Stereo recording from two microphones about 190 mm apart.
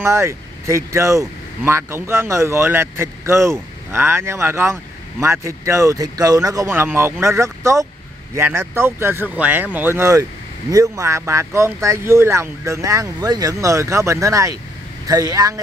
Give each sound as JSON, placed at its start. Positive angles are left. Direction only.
{"t": 0.0, "sound": "speech", "side_deg": -15}